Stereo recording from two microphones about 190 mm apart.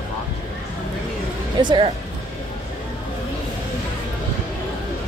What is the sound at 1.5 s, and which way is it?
Speech, 25° right (ahead or behind).